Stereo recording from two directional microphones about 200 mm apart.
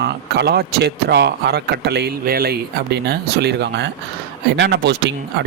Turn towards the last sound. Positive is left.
turn(degrees=-60)  # may be behind; listen again after turning